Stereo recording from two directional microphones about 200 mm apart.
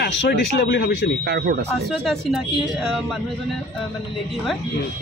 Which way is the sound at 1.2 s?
55° right (ahead or behind).